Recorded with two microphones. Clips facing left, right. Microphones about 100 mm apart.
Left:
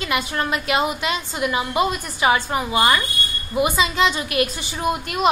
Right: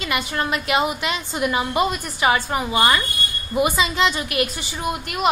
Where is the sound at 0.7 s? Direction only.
10° right (ahead or behind).